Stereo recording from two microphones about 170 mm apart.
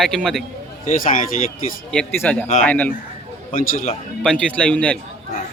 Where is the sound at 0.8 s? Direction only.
50° left (ahead or behind).